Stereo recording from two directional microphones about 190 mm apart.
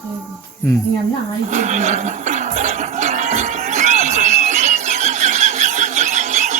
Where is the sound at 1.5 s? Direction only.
40° right (ahead or behind).